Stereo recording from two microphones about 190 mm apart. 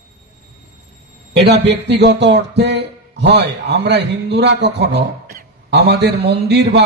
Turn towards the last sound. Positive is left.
turn(degrees=-65)  # may be behind; listen again after turning